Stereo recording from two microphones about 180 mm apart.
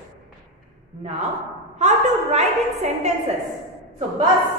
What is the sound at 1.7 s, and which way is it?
A woman's voice, 40° right (ahead or behind).